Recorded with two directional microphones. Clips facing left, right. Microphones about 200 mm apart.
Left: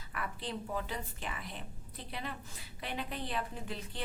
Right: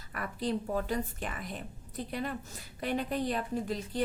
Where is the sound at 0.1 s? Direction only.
40° right (ahead or behind).